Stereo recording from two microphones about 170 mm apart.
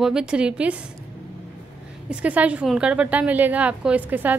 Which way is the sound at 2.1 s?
10° right (ahead or behind).